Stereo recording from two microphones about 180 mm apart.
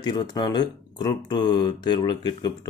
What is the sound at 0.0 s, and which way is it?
Speech, 25° left (ahead or behind).